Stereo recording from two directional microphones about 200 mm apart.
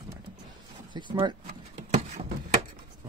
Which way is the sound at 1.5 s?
35° right (ahead or behind).